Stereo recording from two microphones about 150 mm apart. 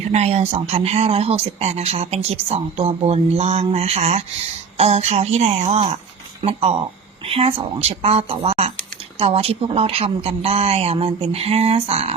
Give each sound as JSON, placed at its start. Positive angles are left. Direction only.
{"t": 0.1, "sound": "speech", "side_deg": -45}